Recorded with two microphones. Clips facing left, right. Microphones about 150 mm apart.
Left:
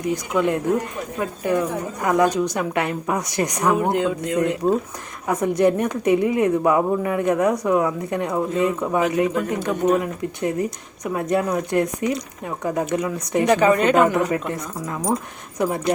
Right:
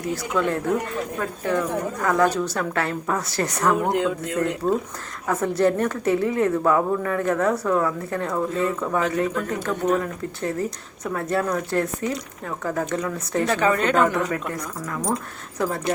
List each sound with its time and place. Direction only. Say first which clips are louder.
0.1 s speech: left 3 dB; 15° left (ahead or behind)
3.8 s speech: left 2 dB; 5° left (ahead or behind)
5.3 s speech: left 2 dB; 15° left (ahead or behind)